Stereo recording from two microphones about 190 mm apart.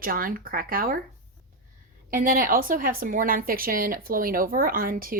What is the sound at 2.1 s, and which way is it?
A woman's voice, 45° right (ahead or behind).